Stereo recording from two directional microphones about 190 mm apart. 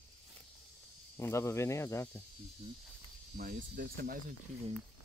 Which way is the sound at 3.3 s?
50° right (ahead or behind).